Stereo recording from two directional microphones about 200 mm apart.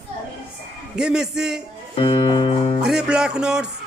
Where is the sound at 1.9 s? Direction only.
30° left (ahead or behind).